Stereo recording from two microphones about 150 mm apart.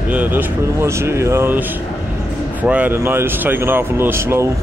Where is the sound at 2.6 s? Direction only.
10° right (ahead or behind).